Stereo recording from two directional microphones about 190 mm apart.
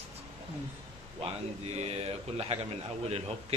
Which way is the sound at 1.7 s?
35° right (ahead or behind).